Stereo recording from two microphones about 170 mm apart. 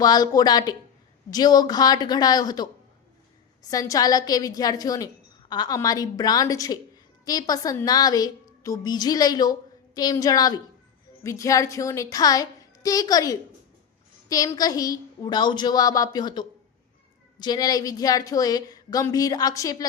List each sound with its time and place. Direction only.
0.0 s speech: 25° left (ahead or behind)
3.7 s a woman's voice: 20° left (ahead or behind)